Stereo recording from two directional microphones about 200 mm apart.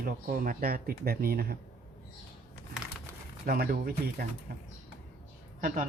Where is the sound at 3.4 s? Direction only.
45° right (ahead or behind).